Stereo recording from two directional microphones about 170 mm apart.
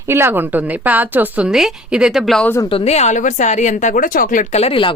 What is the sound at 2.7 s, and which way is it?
A woman's voice, 35° left (ahead or behind).